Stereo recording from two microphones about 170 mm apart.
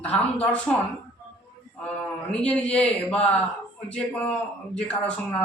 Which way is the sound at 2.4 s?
5° left (ahead or behind).